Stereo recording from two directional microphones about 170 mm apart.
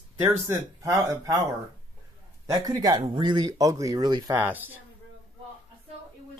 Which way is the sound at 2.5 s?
20° right (ahead or behind).